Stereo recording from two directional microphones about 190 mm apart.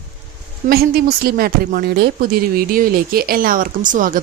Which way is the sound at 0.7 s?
55° right (ahead or behind).